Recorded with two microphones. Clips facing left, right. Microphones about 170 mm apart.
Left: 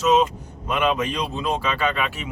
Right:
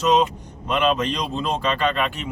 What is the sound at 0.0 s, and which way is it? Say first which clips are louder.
Speech: even; 5° left (ahead or behind).